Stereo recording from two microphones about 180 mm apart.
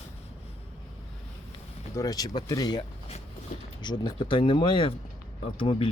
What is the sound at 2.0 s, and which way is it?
Speech, 20° left (ahead or behind).